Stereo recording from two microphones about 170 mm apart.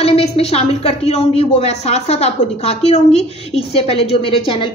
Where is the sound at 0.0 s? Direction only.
35° left (ahead or behind).